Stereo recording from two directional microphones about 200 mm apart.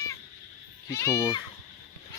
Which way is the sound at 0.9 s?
15° left (ahead or behind).